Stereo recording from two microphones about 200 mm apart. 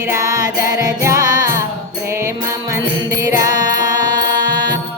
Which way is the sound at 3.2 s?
20° right (ahead or behind).